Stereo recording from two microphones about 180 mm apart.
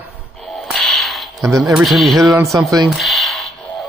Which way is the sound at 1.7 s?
Centre (ahead or behind).